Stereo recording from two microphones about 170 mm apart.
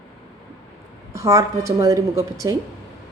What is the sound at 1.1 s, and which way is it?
A woman's voice, 20° right (ahead or behind).